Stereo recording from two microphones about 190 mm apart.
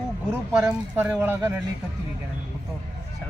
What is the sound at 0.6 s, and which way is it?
Speech, 10° right (ahead or behind).